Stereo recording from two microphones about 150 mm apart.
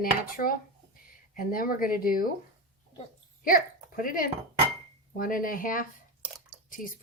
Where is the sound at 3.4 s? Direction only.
70° left (ahead or behind).